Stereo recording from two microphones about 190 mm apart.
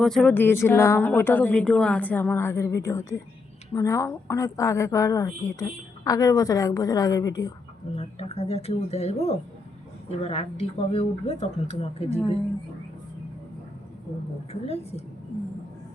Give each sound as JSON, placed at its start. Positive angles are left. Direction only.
{"t": 0.0, "sound": "a woman's voice", "side_deg": 5}
{"t": 7.9, "sound": "speech", "side_deg": 35}
{"t": 14.5, "sound": "speech", "side_deg": 35}